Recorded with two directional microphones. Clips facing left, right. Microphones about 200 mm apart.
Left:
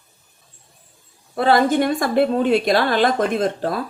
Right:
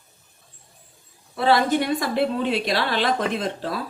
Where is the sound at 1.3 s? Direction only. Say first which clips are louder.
Left 3 dB; 50° left (ahead or behind).